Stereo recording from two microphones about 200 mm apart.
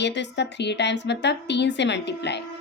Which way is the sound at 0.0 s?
60° left (ahead or behind).